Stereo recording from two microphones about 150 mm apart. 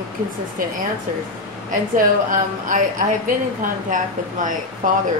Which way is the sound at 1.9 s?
65° right (ahead or behind).